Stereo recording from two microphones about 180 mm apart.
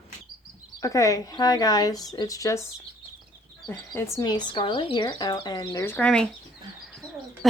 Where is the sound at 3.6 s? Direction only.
10° left (ahead or behind).